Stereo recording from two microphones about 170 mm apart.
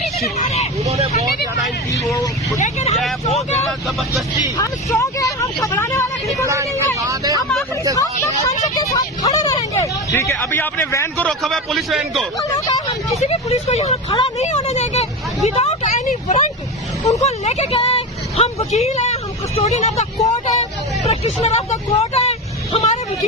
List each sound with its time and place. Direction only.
0.2 s speech: 40° left (ahead or behind)
2.0 s speech: 20° left (ahead or behind)
2.6 s speech: 45° left (ahead or behind)
3.7 s speech: centre (ahead or behind)
4.4 s speech: 20° left (ahead or behind)
7.1 s speech: 20° right (ahead or behind)
7.9 s speech: 20° left (ahead or behind)
11.3 s speech: centre (ahead or behind)
13.1 s a woman's voice: 40° left (ahead or behind)